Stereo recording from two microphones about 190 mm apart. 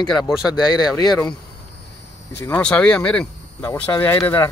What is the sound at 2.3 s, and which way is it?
Speech, 10° left (ahead or behind).